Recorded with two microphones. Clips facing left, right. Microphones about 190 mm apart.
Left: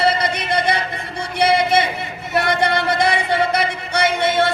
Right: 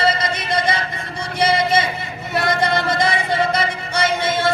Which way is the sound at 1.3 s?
60° left (ahead or behind).